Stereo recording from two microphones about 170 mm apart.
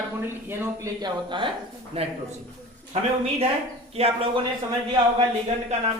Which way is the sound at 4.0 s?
35° right (ahead or behind).